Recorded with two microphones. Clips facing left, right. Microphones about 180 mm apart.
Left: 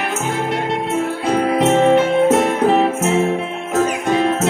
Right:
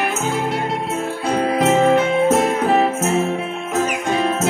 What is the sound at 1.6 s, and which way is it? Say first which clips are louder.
Music: left 1 dB; 5° right (ahead or behind).